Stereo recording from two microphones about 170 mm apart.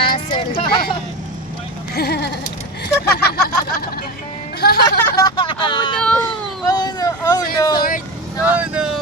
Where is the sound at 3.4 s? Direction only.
60° left (ahead or behind).